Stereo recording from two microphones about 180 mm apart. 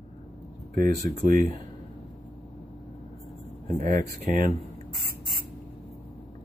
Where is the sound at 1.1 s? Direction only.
50° right (ahead or behind).